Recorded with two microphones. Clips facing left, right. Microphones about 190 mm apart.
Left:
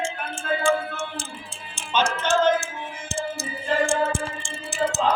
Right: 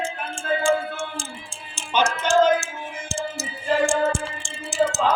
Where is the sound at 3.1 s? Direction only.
55° left (ahead or behind).